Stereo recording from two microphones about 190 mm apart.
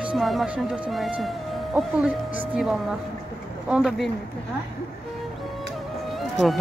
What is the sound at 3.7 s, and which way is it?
Speech, centre (ahead or behind).